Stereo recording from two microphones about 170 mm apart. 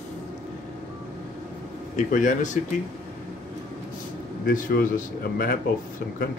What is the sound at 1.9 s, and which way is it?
Speech, 50° left (ahead or behind).